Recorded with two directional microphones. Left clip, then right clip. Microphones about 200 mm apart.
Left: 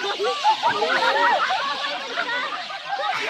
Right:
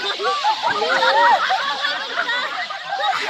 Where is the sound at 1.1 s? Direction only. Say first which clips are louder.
Right 7 dB; 60° right (ahead or behind).